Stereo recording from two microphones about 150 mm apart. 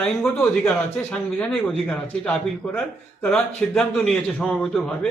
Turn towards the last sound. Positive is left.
turn(degrees=5)  # may be behind; listen again after turning